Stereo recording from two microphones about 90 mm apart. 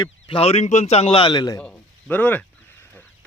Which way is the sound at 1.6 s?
15° left (ahead or behind).